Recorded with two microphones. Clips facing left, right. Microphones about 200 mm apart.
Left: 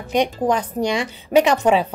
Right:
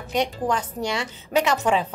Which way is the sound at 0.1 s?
15° left (ahead or behind).